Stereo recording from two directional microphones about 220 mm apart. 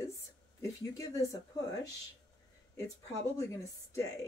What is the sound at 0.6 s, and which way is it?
Speech, 15° left (ahead or behind).